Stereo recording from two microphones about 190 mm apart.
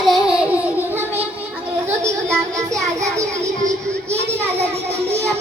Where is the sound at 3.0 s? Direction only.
15° right (ahead or behind).